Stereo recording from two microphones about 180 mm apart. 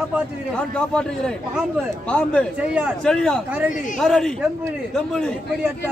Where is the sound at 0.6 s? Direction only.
5° left (ahead or behind).